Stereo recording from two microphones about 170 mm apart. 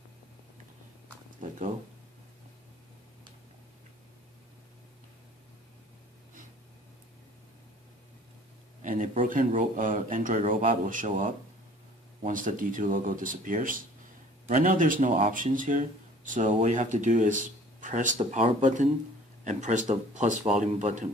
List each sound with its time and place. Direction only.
8.8 s a sound: 50° right (ahead or behind)
9.2 s speech: 50° right (ahead or behind)
12.3 s speech: 50° right (ahead or behind)